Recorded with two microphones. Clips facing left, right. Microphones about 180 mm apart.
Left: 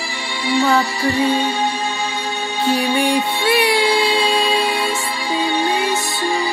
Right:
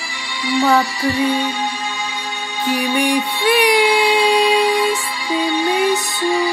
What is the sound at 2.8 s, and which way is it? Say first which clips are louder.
Music: right 2 dB; 15° right (ahead or behind).